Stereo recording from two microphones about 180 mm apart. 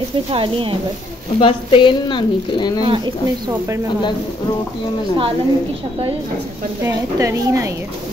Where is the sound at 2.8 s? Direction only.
25° right (ahead or behind).